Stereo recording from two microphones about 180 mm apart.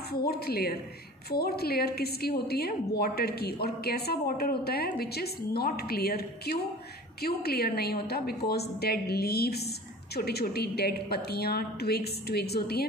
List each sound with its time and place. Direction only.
0.1 s a woman's voice: 60° left (ahead or behind)